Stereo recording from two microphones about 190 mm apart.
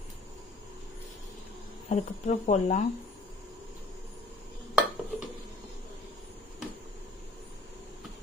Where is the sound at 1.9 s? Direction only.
40° left (ahead or behind).